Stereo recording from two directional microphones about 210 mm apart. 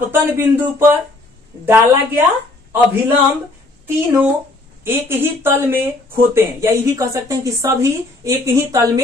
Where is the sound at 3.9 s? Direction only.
5° right (ahead or behind).